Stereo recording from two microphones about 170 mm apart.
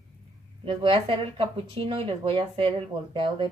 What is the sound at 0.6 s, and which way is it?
Speech, 30° right (ahead or behind).